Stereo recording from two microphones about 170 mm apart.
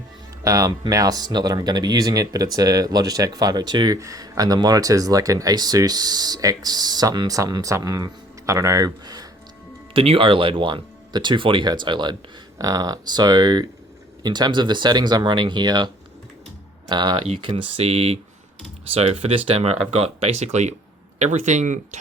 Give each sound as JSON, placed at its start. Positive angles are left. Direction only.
{"t": 0.4, "sound": "speech", "side_deg": -20}
{"t": 9.9, "sound": "speech", "side_deg": -30}
{"t": 16.9, "sound": "speech", "side_deg": -25}